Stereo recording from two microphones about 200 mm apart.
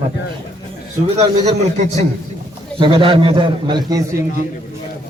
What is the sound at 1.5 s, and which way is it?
A man's voice, 35° right (ahead or behind).